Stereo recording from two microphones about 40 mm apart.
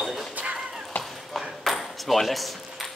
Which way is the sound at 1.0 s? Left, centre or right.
Left.